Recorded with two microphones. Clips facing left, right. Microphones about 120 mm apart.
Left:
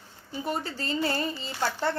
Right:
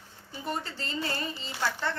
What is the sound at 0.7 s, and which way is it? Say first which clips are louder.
A woman's voice: left 5 dB; 30° left (ahead or behind).